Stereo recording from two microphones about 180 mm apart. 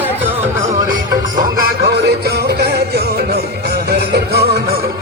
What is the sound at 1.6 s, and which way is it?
Music, 65° right (ahead or behind).